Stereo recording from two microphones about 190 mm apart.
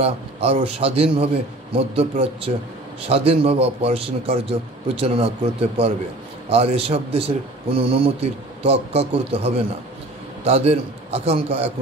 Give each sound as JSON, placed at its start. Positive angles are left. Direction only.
{"t": 0.0, "sound": "a man's voice", "side_deg": -30}